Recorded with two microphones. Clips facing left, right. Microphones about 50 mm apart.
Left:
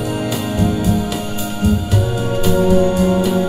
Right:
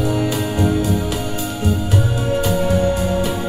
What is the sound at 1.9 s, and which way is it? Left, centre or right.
Music, right.